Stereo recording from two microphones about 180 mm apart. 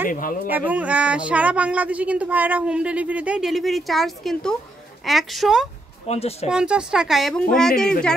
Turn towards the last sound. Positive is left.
turn(degrees=5)  # may be behind; listen again after turning